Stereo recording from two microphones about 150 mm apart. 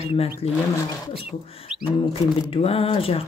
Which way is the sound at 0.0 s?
40° left (ahead or behind).